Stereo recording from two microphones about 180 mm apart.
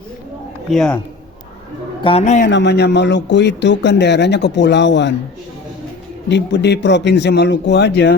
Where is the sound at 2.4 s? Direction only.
70° left (ahead or behind).